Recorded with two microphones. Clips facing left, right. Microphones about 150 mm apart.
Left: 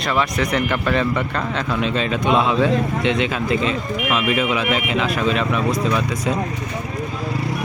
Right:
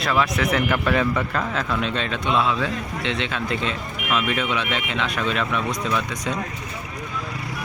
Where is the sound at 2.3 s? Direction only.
20° left (ahead or behind).